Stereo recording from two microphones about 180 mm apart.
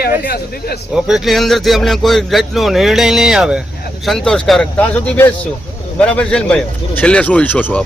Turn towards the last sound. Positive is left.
turn(degrees=10)  # may be behind; listen again after turning